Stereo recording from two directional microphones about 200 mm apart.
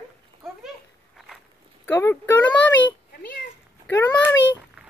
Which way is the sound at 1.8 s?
10° left (ahead or behind).